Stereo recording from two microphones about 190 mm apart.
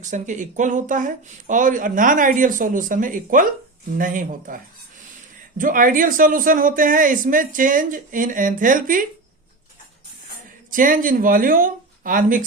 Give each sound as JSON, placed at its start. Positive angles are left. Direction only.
{"t": 0.0, "sound": "a man's voice", "side_deg": -40}
{"t": 5.5, "sound": "a man's voice", "side_deg": -45}
{"t": 10.7, "sound": "a man's voice", "side_deg": -45}